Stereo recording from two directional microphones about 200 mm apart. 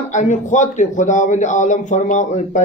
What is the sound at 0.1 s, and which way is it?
A man's voice, 35° left (ahead or behind).